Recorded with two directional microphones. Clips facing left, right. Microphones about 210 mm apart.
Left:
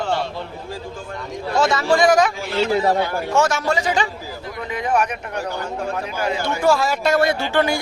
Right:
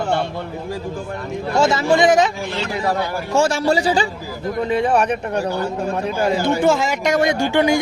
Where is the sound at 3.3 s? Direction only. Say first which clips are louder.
Right 3 dB; 30° right (ahead or behind).